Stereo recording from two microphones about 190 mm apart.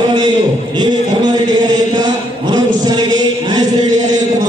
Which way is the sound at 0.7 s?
20° right (ahead or behind).